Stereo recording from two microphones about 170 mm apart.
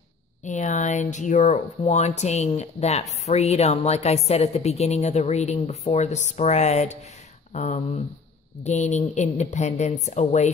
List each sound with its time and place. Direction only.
0.4 s a woman's voice: 45° left (ahead or behind)